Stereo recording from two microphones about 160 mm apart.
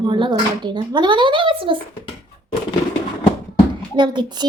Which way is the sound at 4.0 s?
30° right (ahead or behind).